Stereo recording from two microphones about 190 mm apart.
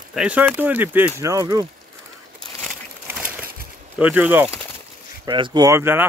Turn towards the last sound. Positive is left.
turn(degrees=-10)  # may be behind; listen again after turning